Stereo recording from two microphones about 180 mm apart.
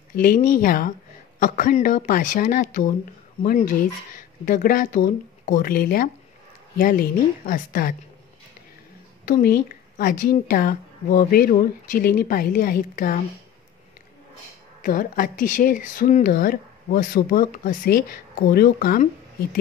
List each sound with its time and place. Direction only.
0.1 s a woman's voice: 50° left (ahead or behind)
9.2 s a woman's voice: 55° left (ahead or behind)
14.8 s a woman's voice: 50° left (ahead or behind)